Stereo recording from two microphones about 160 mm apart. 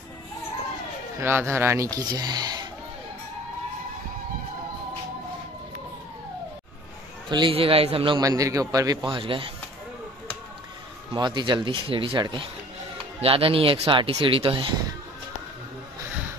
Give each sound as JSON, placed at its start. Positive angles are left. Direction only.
{"t": 1.2, "sound": "speech", "side_deg": -15}
{"t": 7.2, "sound": "speech", "side_deg": -30}
{"t": 8.2, "sound": "a man's voice", "side_deg": -20}
{"t": 11.1, "sound": "a man's voice", "side_deg": -30}